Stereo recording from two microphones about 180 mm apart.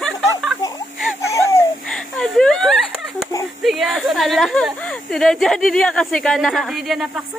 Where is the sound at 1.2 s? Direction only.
15° left (ahead or behind).